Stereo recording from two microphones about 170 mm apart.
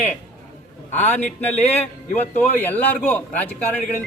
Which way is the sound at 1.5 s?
40° left (ahead or behind).